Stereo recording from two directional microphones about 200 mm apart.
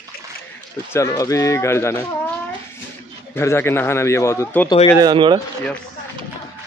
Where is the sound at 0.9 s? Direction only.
15° left (ahead or behind).